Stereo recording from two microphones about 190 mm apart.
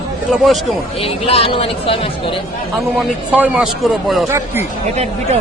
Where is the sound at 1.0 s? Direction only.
30° left (ahead or behind).